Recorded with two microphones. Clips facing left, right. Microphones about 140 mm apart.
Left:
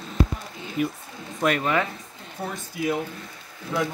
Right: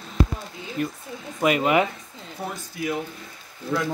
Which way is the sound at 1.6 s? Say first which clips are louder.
Right 4 dB; 15° right (ahead or behind).